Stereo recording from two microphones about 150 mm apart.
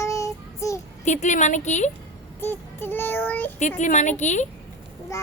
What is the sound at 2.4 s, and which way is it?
Child singing, 15° left (ahead or behind).